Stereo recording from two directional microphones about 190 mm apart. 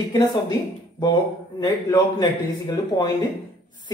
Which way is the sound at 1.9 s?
20° left (ahead or behind).